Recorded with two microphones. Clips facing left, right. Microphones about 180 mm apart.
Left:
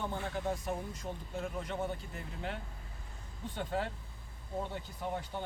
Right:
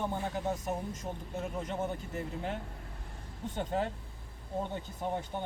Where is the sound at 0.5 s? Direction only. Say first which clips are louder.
Right 2 dB; 45° right (ahead or behind).